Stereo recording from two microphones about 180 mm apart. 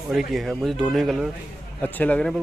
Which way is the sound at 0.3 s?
Centre (ahead or behind).